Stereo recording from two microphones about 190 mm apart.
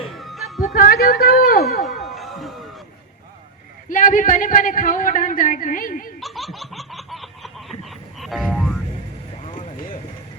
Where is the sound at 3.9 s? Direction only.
45° left (ahead or behind).